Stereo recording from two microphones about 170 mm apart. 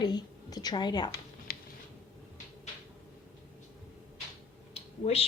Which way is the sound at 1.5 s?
60° left (ahead or behind).